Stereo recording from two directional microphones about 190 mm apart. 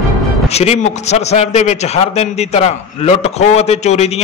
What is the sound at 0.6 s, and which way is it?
A man's voice, 35° left (ahead or behind).